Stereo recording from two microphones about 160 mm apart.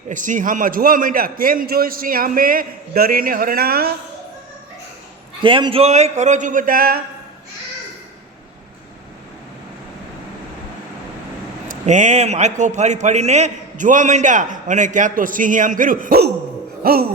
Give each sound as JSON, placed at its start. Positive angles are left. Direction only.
{"t": 0.1, "sound": "a man's voice", "side_deg": -55}
{"t": 5.4, "sound": "a man's voice", "side_deg": -30}
{"t": 11.7, "sound": "a man's voice", "side_deg": -50}
{"t": 16.8, "sound": "a sound", "side_deg": -70}